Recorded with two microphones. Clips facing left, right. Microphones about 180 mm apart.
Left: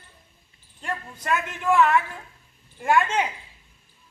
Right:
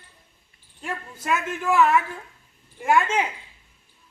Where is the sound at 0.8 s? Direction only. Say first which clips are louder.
Even; 5° right (ahead or behind).